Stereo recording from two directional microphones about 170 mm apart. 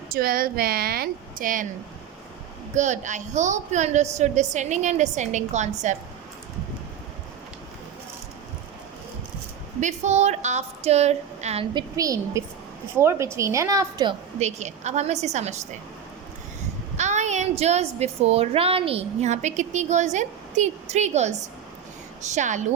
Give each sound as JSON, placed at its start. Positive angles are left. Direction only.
{"t": 0.1, "sound": "a woman's voice", "side_deg": -60}
{"t": 2.7, "sound": "a woman's voice", "side_deg": -45}
{"t": 9.8, "sound": "a woman's voice", "side_deg": -40}
{"t": 11.7, "sound": "a woman's voice", "side_deg": -25}
{"t": 14.3, "sound": "a woman's voice", "side_deg": -40}
{"t": 17.0, "sound": "a woman's voice", "side_deg": -45}